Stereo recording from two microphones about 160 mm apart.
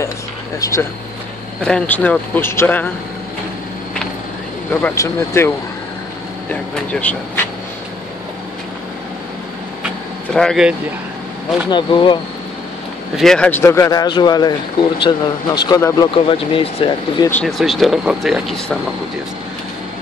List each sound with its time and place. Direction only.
0.6 s a man's voice: 20° left (ahead or behind)
1.6 s speech: 5° left (ahead or behind)
4.8 s speech: 20° left (ahead or behind)
6.5 s speech: 10° left (ahead or behind)
10.3 s speech: centre (ahead or behind)
11.7 s a man's voice: 30° left (ahead or behind)
13.1 s a man's voice: 5° left (ahead or behind); by 16.1 s 25° left (ahead or behind)
16.2 s speech: 35° left (ahead or behind)
17.5 s speech: centre (ahead or behind)